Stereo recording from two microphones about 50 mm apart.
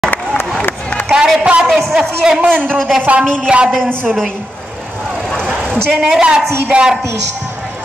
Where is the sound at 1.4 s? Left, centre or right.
Right.